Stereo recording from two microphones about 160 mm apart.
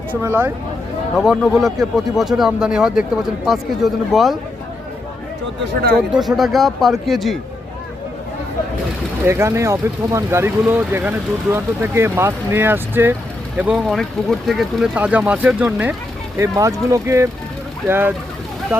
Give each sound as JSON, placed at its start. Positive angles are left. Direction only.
{"t": 0.1, "sound": "speech", "side_deg": -15}
{"t": 1.1, "sound": "speech", "side_deg": 0}
{"t": 6.1, "sound": "speech", "side_deg": 0}
{"t": 9.2, "sound": "speech", "side_deg": -15}
{"t": 13.8, "sound": "speech", "side_deg": 5}
{"t": 16.4, "sound": "speech", "side_deg": -20}